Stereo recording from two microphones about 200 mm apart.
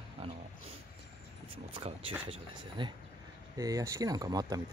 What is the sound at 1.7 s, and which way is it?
Speech, 30° right (ahead or behind).